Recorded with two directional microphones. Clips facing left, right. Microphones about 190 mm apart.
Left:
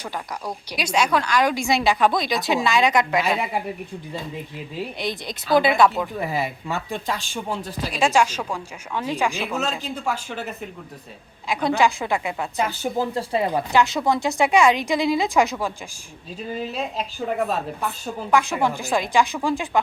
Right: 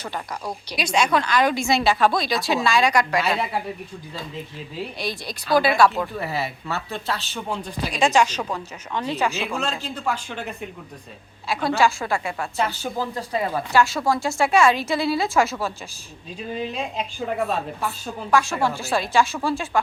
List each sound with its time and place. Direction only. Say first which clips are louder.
0.7 s speech: even; 10° left (ahead or behind)
11.4 s speech: left 1 dB; 15° left (ahead or behind)
16.4 s speech: even; 5° left (ahead or behind)
18.0 s speech: left 1 dB; 15° left (ahead or behind)